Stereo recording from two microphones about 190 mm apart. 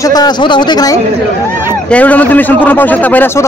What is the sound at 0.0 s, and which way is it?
Speech, 20° left (ahead or behind).